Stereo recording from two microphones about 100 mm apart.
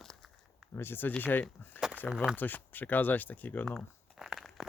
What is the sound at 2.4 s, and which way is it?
Speech, 20° left (ahead or behind).